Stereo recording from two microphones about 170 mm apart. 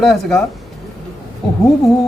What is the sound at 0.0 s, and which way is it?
Speech, 5° left (ahead or behind).